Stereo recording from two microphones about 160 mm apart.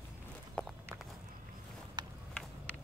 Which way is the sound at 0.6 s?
5° left (ahead or behind).